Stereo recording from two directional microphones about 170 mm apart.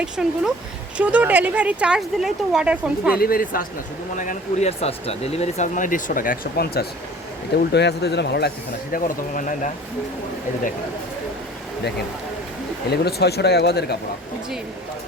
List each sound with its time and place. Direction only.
0.0 s speech: 5° right (ahead or behind)
3.2 s speech: 60° left (ahead or behind)
4.2 s speech: 45° left (ahead or behind); by 6.8 s 60° left (ahead or behind)
7.7 s speech: 80° left; by 9.6 s 55° left (ahead or behind)
12.9 s speech: 70° left (ahead or behind)